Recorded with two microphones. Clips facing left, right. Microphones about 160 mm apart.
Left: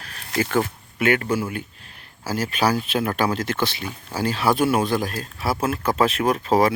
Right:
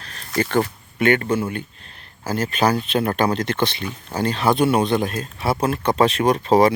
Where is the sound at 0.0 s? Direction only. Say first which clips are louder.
Right 2 dB; 5° left (ahead or behind).